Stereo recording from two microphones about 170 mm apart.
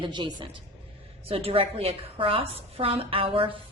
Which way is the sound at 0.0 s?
25° right (ahead or behind).